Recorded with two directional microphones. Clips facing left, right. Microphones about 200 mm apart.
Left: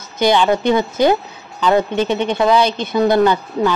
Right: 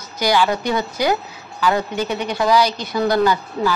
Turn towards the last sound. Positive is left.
turn(degrees=25)  # may be behind; listen again after turning